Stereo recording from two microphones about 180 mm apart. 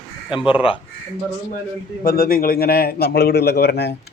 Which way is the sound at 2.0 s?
55° left (ahead or behind).